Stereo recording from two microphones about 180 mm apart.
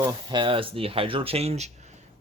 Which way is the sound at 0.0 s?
25° right (ahead or behind).